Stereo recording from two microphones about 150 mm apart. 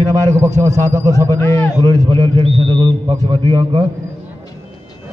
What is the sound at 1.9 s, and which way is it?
A man's voice, 35° right (ahead or behind).